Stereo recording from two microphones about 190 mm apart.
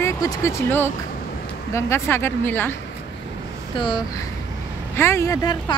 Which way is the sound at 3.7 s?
25° left (ahead or behind).